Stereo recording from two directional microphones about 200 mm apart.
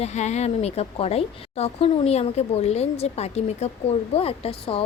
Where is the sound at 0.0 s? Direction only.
35° left (ahead or behind).